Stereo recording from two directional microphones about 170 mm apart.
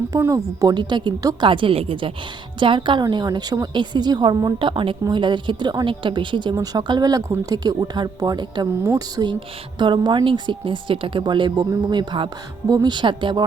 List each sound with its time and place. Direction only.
0.1 s a woman's voice: 20° right (ahead or behind)